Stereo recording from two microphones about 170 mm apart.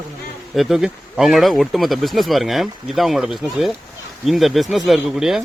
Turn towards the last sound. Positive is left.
turn(degrees=0)  # may be behind; listen again after turning